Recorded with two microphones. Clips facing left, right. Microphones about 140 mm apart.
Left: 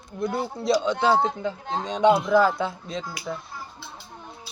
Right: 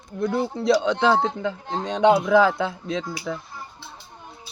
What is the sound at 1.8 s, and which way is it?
Speech, 60° right (ahead or behind).